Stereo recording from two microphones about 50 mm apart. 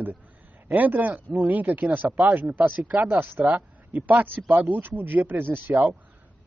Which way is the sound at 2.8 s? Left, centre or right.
Right.